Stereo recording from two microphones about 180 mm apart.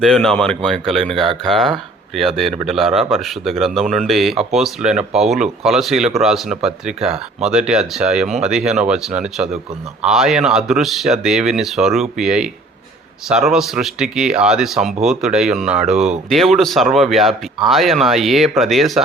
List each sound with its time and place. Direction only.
0.0 s speech: centre (ahead or behind)
7.1 s speech: 35° right (ahead or behind)
7.5 s speech: 5° right (ahead or behind)